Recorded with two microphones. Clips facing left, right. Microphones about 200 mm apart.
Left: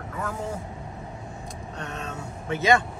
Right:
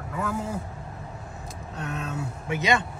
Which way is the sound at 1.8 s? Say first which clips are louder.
Right 4 dB; 5° right (ahead or behind).